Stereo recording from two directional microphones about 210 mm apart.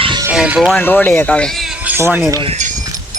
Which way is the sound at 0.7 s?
10° left (ahead or behind).